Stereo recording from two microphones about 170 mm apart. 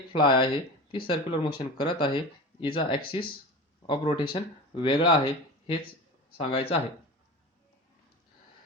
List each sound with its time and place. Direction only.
0.1 s speech: 30° left (ahead or behind)